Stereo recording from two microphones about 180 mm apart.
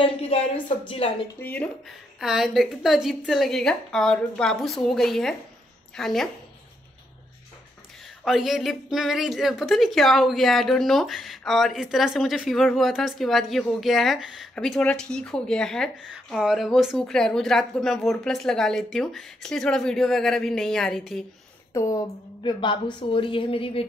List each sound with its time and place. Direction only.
0.0 s speech: 30° left (ahead or behind)
1.4 s speech: 10° left (ahead or behind)
8.2 s speech: centre (ahead or behind)
21.7 s a woman's voice: 20° left (ahead or behind)